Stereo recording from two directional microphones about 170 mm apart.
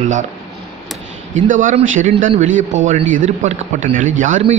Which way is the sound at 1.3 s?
50° right (ahead or behind).